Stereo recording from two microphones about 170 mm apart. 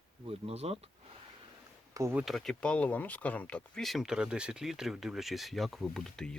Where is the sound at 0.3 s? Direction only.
35° right (ahead or behind).